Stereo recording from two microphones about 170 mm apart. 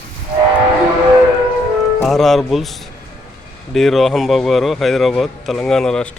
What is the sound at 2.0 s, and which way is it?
Speech, centre (ahead or behind).